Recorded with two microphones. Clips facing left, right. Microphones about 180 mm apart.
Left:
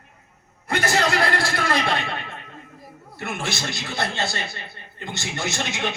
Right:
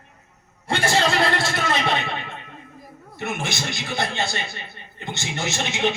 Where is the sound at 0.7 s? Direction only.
30° right (ahead or behind).